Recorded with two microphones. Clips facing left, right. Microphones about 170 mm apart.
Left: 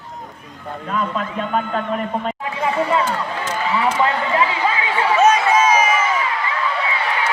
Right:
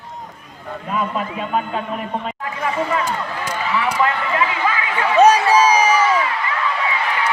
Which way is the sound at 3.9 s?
25° left (ahead or behind).